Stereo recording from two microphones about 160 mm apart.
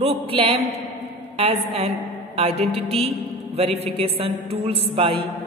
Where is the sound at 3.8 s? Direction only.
35° right (ahead or behind).